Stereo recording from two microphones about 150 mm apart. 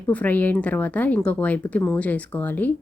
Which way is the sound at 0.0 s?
10° left (ahead or behind).